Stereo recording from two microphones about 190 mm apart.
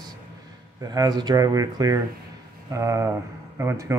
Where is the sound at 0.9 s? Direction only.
20° right (ahead or behind).